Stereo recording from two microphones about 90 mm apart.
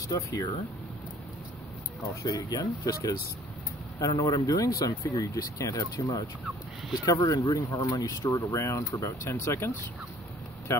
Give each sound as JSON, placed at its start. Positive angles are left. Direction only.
{"t": 0.1, "sound": "speech", "side_deg": 45}
{"t": 2.2, "sound": "speech", "side_deg": 45}
{"t": 10.7, "sound": "speech", "side_deg": 30}